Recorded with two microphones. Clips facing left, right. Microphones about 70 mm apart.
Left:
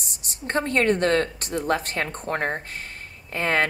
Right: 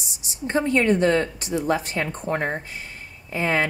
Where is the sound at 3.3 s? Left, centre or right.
Left.